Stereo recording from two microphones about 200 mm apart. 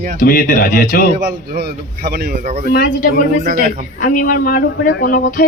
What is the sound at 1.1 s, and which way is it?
A man's voice, 55° right (ahead or behind).